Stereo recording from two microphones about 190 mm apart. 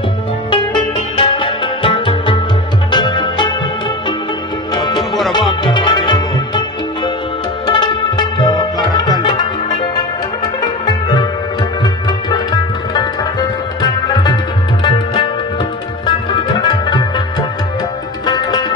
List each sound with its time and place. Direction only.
1.1 s music: 25° left (ahead or behind)
4.8 s music: 20° left (ahead or behind)